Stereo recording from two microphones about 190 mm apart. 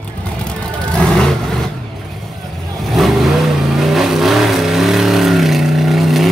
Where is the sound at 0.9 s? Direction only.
5° left (ahead or behind).